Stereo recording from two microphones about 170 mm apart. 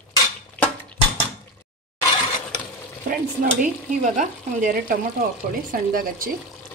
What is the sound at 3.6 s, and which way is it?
A woman's voice, 50° right (ahead or behind).